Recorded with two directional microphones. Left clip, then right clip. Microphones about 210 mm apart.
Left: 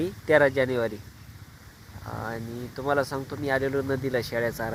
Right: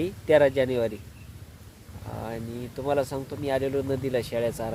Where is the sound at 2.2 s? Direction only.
5° left (ahead or behind).